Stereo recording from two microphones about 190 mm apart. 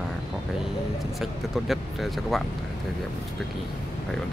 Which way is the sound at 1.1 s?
Centre (ahead or behind).